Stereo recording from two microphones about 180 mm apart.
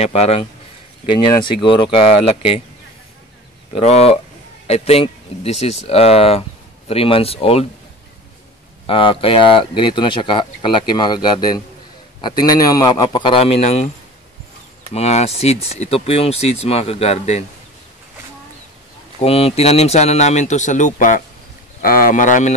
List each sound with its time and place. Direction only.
0.0 s speech: 35° left (ahead or behind)
3.8 s speech: 35° left (ahead or behind)
8.8 s speech: 30° left (ahead or behind)
15.0 s speech: 35° left (ahead or behind)
19.1 s speech: 35° left (ahead or behind)